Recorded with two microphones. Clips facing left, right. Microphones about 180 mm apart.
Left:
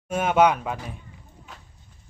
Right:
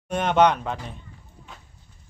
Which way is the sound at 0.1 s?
5° left (ahead or behind).